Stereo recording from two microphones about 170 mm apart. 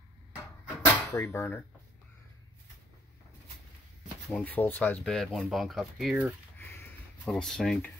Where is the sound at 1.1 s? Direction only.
15° left (ahead or behind).